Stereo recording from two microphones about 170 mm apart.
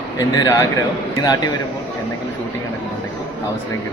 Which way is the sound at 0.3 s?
20° left (ahead or behind).